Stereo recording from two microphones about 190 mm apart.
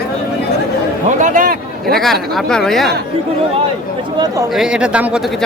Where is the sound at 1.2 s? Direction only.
45° right (ahead or behind).